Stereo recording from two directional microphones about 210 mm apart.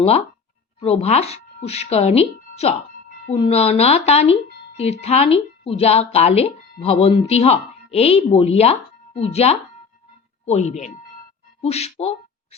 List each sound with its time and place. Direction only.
0.8 s speech: 30° left (ahead or behind)